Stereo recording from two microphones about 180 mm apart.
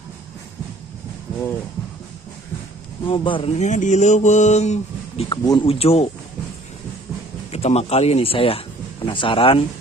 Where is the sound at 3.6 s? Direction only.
45° left (ahead or behind).